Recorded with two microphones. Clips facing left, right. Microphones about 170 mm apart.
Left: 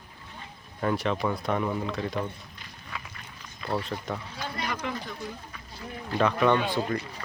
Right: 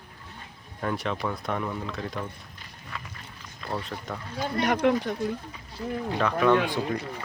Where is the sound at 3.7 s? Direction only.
Centre (ahead or behind).